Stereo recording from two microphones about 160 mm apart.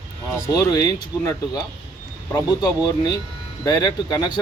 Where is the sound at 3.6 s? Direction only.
25° left (ahead or behind).